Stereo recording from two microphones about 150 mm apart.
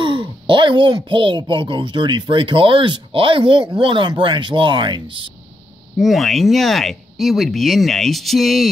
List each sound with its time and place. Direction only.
0.0 s speech: 35° right (ahead or behind)
5.9 s speech: centre (ahead or behind)